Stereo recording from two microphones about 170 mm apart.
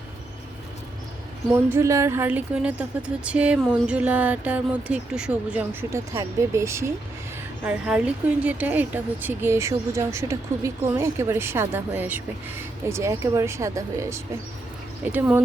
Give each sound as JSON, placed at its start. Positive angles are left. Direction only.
{"t": 1.5, "sound": "speech", "side_deg": -15}
{"t": 5.9, "sound": "speech", "side_deg": -15}